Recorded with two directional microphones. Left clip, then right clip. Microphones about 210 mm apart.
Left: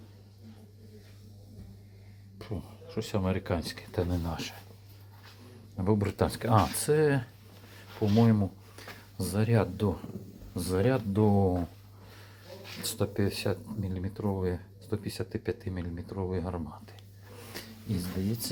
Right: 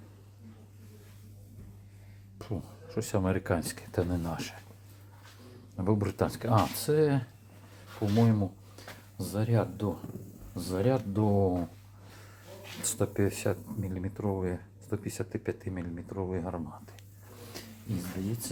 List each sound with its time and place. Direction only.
2.4 s speech: 15° right (ahead or behind)
5.7 s speech: centre (ahead or behind)
12.8 s speech: 5° right (ahead or behind)
17.5 s a sound: 15° left (ahead or behind)